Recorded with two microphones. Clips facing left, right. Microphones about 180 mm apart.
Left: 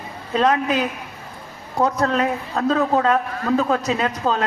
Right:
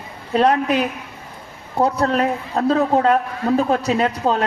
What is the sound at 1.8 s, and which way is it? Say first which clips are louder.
A man's voice: right 2 dB; 30° right (ahead or behind).